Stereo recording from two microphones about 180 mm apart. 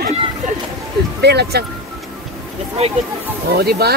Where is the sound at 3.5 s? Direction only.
60° right (ahead or behind).